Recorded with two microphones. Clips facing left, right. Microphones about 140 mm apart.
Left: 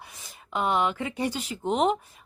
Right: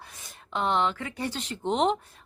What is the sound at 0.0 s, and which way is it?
Speech, 5° left (ahead or behind).